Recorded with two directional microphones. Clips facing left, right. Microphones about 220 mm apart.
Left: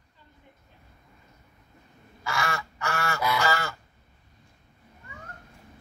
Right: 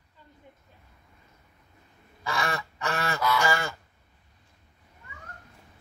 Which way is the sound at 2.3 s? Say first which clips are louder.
Right 1 dB; 20° right (ahead or behind).